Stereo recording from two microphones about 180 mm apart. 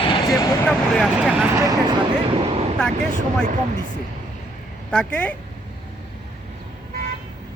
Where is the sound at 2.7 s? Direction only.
5° left (ahead or behind).